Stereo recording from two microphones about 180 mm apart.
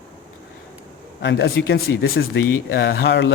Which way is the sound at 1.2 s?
70° left (ahead or behind).